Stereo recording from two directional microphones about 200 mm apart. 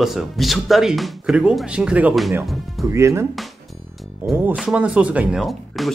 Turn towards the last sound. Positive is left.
turn(degrees=0)  # may be behind; listen again after turning